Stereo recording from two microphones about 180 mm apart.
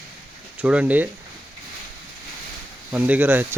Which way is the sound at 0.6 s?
5° right (ahead or behind).